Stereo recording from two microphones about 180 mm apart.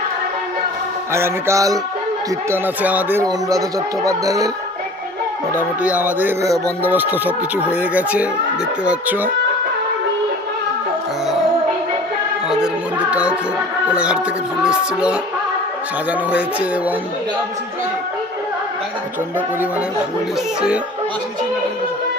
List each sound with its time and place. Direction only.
1.1 s speech: 15° right (ahead or behind)
5.5 s speech: 10° right (ahead or behind)
12.5 s music: 5° right (ahead or behind)
13.9 s speech: 5° right (ahead or behind)
14.6 s music: 5° right (ahead or behind)
16.3 s speech: 10° right (ahead or behind)